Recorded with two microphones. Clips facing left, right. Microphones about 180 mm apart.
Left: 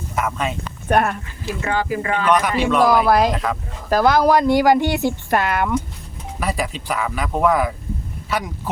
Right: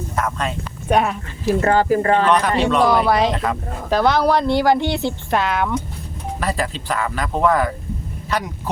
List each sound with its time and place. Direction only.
0.2 s speech: 5° left (ahead or behind)
1.5 s speech: 45° right (ahead or behind)
2.6 s speech: 5° left (ahead or behind)